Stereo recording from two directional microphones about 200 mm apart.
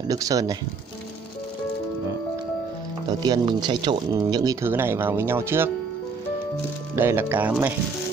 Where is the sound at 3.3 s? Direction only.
20° right (ahead or behind).